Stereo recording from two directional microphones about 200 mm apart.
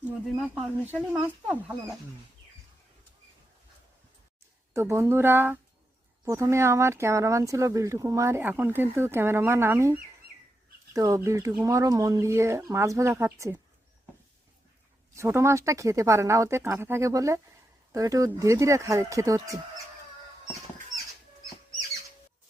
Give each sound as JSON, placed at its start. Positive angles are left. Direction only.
{"t": 0.0, "sound": "speech", "side_deg": 0}
{"t": 4.7, "sound": "speech", "side_deg": -15}
{"t": 15.1, "sound": "speech", "side_deg": -15}